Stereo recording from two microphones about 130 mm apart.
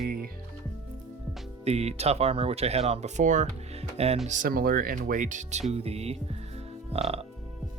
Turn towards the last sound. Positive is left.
turn(degrees=-50)  # may be behind; listen again after turning